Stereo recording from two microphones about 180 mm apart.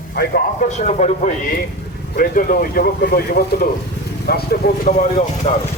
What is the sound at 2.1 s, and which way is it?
Speech, 55° left (ahead or behind).